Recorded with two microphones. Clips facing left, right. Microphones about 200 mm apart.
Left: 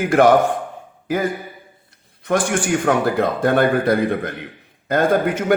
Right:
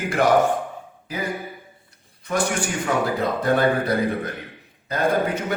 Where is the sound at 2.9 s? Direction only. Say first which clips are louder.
Left 4 dB; 65° left (ahead or behind).